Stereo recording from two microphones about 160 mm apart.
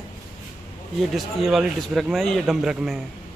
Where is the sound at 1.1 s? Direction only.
Centre (ahead or behind).